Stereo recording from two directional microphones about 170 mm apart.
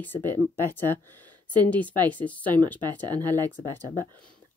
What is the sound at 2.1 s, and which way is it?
Speech, 10° left (ahead or behind).